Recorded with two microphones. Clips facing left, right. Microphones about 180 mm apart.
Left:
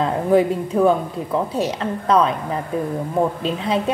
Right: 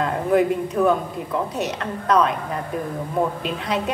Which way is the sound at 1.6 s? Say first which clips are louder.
Left 4 dB; 30° left (ahead or behind).